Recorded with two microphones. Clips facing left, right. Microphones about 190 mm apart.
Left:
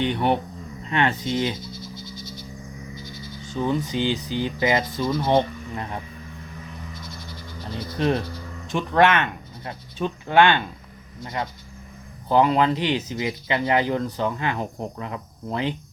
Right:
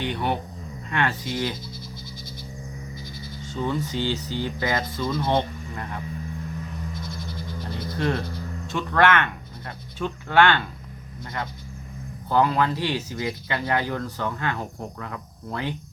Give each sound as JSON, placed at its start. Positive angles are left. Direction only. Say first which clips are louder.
{"t": 0.0, "sound": "speech", "louder": "left 5 dB", "side_deg": 20}
{"t": 3.5, "sound": "speech", "louder": "left 3 dB", "side_deg": 15}
{"t": 7.9, "sound": "speech", "louder": "left 3 dB", "side_deg": 20}